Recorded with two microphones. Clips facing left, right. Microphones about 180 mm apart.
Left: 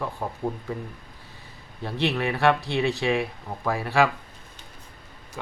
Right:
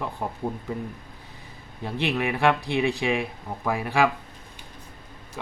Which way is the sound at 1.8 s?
15° right (ahead or behind).